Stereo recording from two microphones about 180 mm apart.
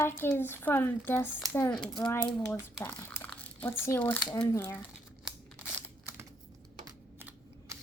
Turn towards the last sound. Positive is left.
turn(degrees=-15)  # may be behind; listen again after turning